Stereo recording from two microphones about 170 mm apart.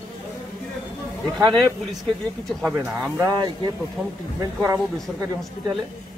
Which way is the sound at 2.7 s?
15° right (ahead or behind).